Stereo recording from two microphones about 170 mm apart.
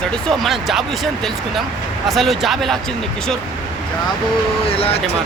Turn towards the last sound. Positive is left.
turn(degrees=35)  # may be behind; listen again after turning